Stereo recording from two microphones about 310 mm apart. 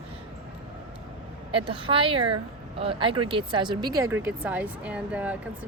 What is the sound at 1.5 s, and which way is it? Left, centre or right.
Speech, centre.